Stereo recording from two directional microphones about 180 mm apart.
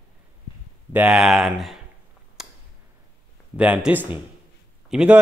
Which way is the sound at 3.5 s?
5° right (ahead or behind).